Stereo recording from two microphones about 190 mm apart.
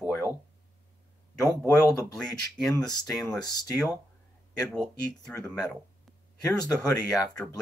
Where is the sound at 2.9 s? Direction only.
20° left (ahead or behind).